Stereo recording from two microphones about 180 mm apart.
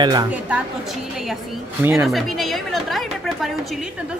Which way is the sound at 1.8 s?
15° right (ahead or behind).